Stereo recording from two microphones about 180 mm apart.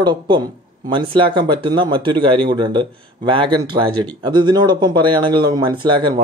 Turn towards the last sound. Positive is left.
turn(degrees=-25)  # may be behind; listen again after turning